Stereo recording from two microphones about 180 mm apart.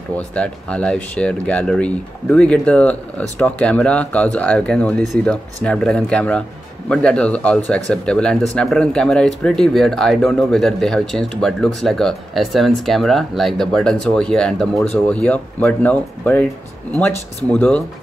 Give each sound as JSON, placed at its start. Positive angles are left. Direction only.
{"t": 0.3, "sound": "speech", "side_deg": 5}
{"t": 17.5, "sound": "speech", "side_deg": 5}